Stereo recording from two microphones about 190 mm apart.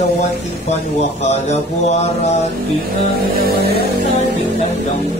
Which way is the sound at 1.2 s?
35° left (ahead or behind).